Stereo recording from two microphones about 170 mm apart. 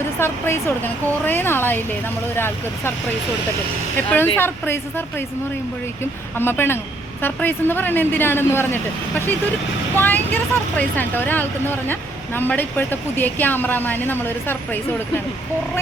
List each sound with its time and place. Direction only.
0.2 s speech: 15° left (ahead or behind)
3.9 s speech: 10° left (ahead or behind)
9.9 s speech: 10° left (ahead or behind)